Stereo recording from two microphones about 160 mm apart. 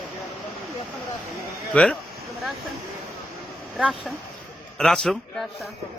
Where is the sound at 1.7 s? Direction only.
5° left (ahead or behind).